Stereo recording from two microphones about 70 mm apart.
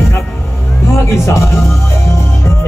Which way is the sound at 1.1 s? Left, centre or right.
Left.